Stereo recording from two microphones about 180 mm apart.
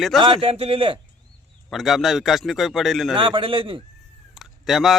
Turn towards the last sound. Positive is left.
turn(degrees=0)  # may be behind; listen again after turning